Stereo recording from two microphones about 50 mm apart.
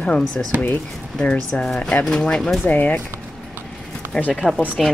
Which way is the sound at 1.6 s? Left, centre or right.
Centre.